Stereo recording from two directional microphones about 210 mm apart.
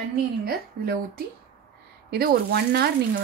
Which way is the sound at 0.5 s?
45° right (ahead or behind).